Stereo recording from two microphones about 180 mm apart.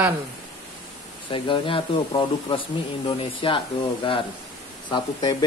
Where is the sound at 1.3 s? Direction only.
30° left (ahead or behind).